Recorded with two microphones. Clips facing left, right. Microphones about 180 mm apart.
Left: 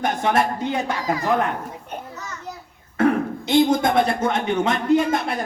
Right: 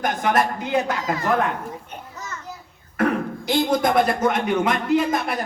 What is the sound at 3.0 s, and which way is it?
Speech, 25° left (ahead or behind).